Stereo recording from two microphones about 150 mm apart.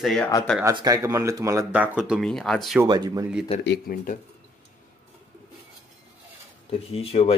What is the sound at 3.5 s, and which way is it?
Speech, 45° left (ahead or behind).